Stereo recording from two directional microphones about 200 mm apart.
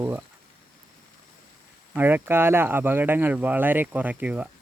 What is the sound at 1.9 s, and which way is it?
Speech, 10° right (ahead or behind).